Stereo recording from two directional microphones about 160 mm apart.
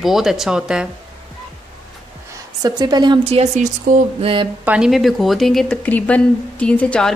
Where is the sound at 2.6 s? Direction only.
25° right (ahead or behind).